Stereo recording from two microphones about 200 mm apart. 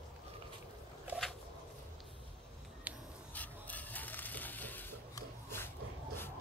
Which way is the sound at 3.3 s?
10° left (ahead or behind).